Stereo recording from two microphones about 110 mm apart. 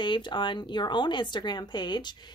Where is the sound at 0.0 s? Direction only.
45° left (ahead or behind).